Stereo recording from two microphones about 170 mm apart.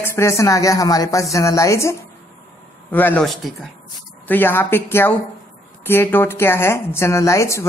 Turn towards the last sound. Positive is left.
turn(degrees=15)  # may be behind; listen again after turning